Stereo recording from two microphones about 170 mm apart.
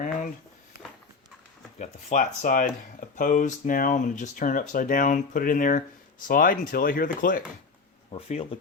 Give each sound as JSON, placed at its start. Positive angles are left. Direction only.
{"t": 1.8, "sound": "speech", "side_deg": 45}
{"t": 8.1, "sound": "speech", "side_deg": 35}